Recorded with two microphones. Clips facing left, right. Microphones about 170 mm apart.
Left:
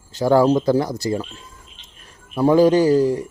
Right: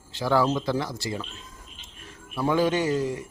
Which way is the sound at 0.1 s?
40° left (ahead or behind).